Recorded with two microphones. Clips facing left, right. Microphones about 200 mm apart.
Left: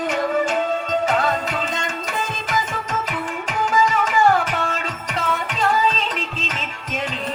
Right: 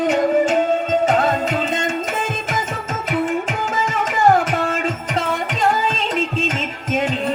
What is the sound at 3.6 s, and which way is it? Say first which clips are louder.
Tabla: left 2 dB; 45° right (ahead or behind).